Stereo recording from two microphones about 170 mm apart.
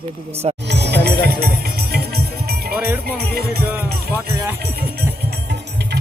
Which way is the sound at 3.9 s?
65° right (ahead or behind).